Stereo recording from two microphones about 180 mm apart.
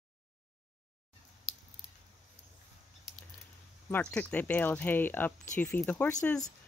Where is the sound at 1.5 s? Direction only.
Centre (ahead or behind).